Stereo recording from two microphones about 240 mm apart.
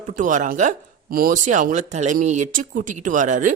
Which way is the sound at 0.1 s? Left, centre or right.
Right.